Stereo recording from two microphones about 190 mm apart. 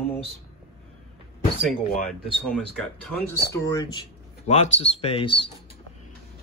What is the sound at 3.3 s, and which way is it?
Speech, 15° left (ahead or behind).